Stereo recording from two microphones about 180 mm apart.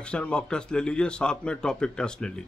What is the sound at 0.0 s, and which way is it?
A man's voice, 5° left (ahead or behind).